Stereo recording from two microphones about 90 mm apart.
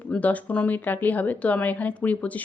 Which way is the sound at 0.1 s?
15° left (ahead or behind).